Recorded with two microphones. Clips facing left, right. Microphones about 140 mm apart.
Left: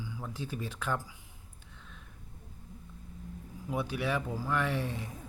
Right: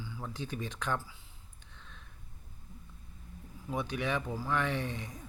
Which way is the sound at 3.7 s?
5° left (ahead or behind).